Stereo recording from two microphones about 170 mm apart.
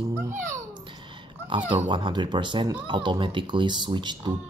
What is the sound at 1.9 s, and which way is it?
A child's voice, 25° right (ahead or behind).